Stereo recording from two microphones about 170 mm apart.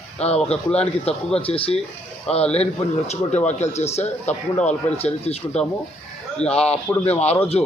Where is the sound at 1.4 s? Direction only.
35° left (ahead or behind).